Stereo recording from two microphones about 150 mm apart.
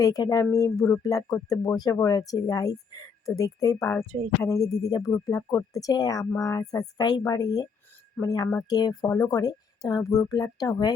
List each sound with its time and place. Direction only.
0.0 s speech: 25° left (ahead or behind)